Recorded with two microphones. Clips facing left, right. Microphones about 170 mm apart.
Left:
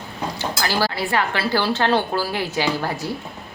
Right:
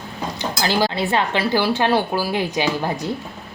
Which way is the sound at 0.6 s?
20° right (ahead or behind).